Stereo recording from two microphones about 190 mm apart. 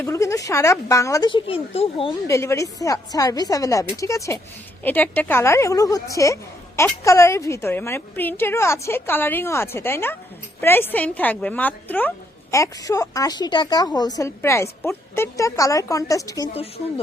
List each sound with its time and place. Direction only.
0.0 s a woman's voice: 15° left (ahead or behind)
2.2 s a woman's voice: 15° left (ahead or behind)